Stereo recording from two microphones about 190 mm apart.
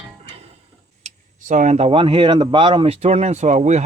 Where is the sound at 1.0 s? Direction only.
40° right (ahead or behind).